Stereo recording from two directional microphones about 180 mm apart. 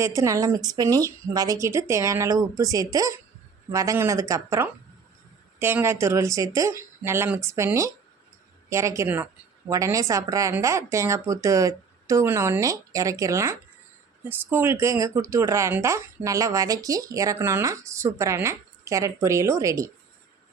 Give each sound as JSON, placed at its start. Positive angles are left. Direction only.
{"t": 0.0, "sound": "speech", "side_deg": -15}